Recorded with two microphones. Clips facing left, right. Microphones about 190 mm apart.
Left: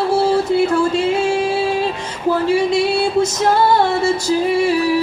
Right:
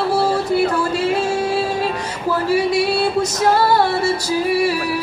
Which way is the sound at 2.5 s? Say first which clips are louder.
Even; 25° left (ahead or behind).